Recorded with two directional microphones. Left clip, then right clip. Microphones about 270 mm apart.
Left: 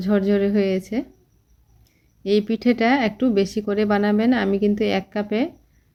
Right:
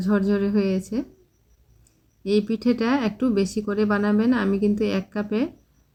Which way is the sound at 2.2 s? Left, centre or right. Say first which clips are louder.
Left 2 dB; centre.